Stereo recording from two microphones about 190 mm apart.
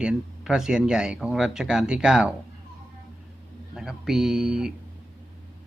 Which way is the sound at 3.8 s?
Centre (ahead or behind).